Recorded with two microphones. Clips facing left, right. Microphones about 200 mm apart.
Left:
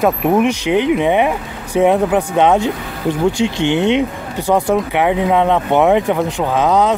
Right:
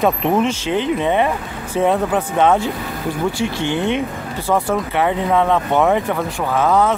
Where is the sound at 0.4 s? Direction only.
15° left (ahead or behind).